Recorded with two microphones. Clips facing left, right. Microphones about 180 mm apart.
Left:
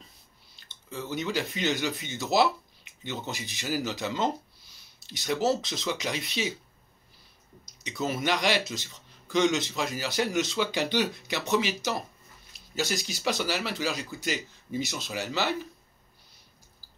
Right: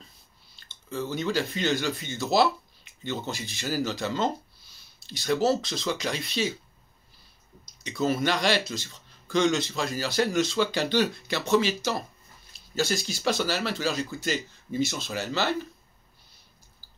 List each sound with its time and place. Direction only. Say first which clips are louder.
0.6 s a sound: right 5 dB; 15° left (ahead or behind)
1.1 s speech: right 1 dB; 15° left (ahead or behind)
7.8 s speech: right 4 dB; 20° left (ahead or behind)